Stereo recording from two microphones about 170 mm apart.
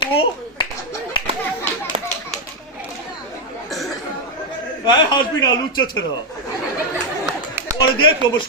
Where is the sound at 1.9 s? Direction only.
30° right (ahead or behind).